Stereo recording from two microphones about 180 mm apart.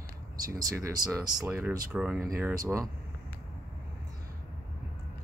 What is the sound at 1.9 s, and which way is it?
Speech, 5° right (ahead or behind).